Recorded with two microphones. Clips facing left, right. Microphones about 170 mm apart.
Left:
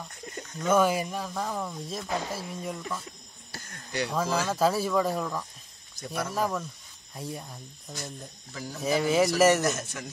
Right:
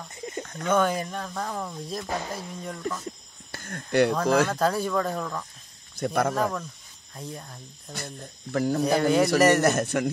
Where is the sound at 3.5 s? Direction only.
55° right (ahead or behind).